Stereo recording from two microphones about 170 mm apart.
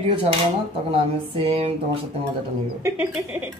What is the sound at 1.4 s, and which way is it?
Speech, 35° right (ahead or behind).